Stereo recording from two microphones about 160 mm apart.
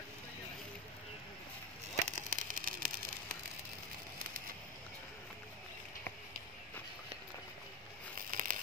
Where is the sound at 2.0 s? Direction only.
50° right (ahead or behind).